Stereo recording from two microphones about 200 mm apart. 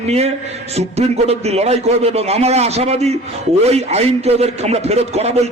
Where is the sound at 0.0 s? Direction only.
30° right (ahead or behind).